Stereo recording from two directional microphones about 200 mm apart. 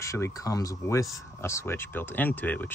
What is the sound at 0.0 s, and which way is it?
Speech, 15° left (ahead or behind).